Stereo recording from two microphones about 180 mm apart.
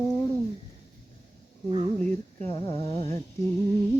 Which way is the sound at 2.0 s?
10° left (ahead or behind).